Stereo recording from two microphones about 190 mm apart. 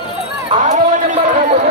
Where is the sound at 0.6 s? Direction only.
40° right (ahead or behind).